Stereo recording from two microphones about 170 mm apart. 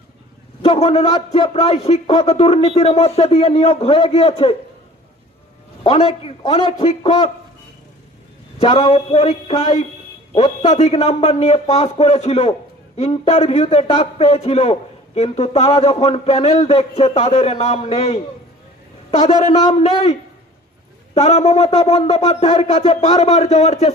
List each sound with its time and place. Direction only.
0.6 s a man's voice: 35° left (ahead or behind)
5.8 s a man's voice: 35° left (ahead or behind)
8.6 s a man's voice: 30° left (ahead or behind)
19.3 s a man's voice: 40° left (ahead or behind)
21.2 s a man's voice: 40° left (ahead or behind)